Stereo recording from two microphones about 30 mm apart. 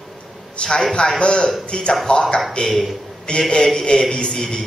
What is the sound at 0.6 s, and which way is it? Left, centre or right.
Mantra, left.